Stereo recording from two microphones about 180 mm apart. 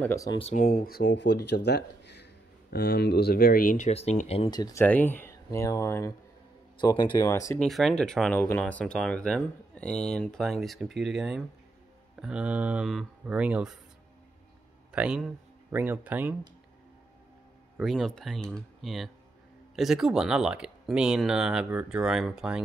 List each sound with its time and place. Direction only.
0.0 s speech: 15° left (ahead or behind)
0.4 s speech: 35° left (ahead or behind)
0.7 s speech: 55° left (ahead or behind); by 4.5 s 35° left (ahead or behind)
4.5 s speech: 20° left (ahead or behind)
4.8 s speech: 10° left (ahead or behind)
7.6 s speech: centre (ahead or behind)
14.9 s speech: 5° right (ahead or behind)
17.7 s speech: centre (ahead or behind)